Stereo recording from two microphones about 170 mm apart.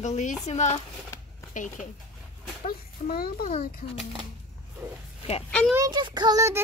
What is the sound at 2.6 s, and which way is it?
Speech, 60° left (ahead or behind).